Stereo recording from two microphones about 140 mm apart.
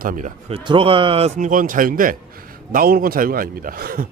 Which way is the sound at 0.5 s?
35° right (ahead or behind).